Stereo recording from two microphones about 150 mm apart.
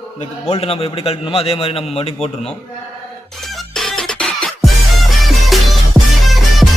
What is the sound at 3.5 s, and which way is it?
Music, 5° left (ahead or behind).